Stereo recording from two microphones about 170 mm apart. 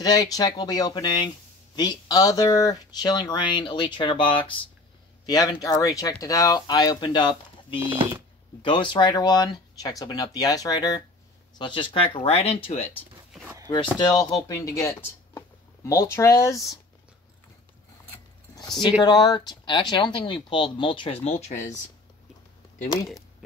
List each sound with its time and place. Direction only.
0.0 s speech: 20° left (ahead or behind)
7.8 s speech: 10° right (ahead or behind)
8.6 s speech: 30° left (ahead or behind)
18.8 s speech: 25° left (ahead or behind); by 21.7 s 45° left (ahead or behind)